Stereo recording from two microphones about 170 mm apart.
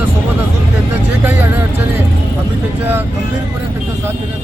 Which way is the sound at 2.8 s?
10° right (ahead or behind).